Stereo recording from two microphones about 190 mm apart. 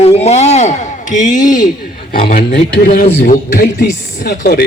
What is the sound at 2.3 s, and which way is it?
Speech, 55° left (ahead or behind).